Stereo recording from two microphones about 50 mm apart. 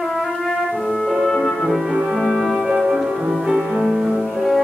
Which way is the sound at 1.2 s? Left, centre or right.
Centre.